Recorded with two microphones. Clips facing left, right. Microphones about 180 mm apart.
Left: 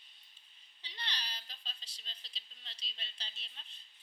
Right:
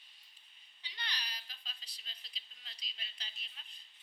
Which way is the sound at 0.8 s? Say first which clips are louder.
Left 1 dB; 30° left (ahead or behind).